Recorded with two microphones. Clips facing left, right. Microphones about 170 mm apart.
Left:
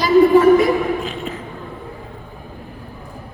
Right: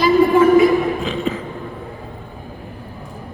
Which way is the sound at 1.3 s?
90° right.